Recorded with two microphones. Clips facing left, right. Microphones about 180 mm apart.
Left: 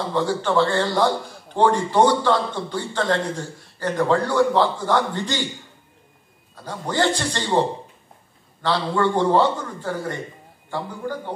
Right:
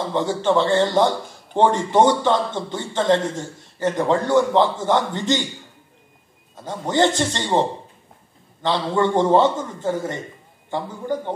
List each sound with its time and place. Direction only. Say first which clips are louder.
0.1 s a man's voice: right 2 dB; 20° right (ahead or behind)
6.5 s a man's voice: right 4 dB; 20° right (ahead or behind)
8.6 s a man's voice: right 1 dB; 20° right (ahead or behind)